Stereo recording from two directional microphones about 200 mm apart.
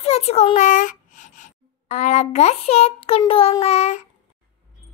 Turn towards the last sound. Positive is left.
turn(degrees=30)  # may be behind; listen again after turning